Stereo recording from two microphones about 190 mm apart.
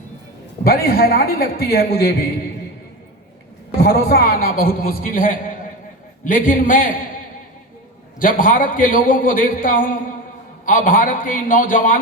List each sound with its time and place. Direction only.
0.6 s a man's voice: 50° left (ahead or behind)
3.8 s a man's voice: 55° left (ahead or behind)
8.2 s a man's voice: 45° left (ahead or behind)